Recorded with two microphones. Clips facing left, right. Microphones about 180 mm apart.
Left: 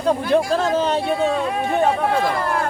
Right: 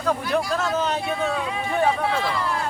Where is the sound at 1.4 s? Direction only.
55° left (ahead or behind).